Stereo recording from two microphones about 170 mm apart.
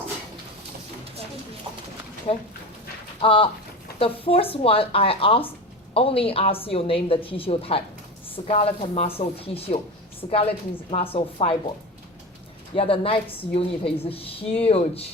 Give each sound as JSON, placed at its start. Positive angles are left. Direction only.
{"t": 2.3, "sound": "a woman's voice", "side_deg": 35}
{"t": 12.7, "sound": "a woman's voice", "side_deg": 35}